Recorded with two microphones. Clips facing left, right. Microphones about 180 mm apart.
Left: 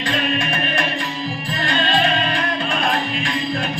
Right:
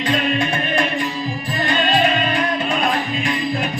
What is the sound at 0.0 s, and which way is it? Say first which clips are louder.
Music: right 3 dB; 20° right (ahead or behind).